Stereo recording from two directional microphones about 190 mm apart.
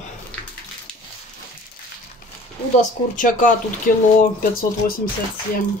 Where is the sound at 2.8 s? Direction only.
45° left (ahead or behind).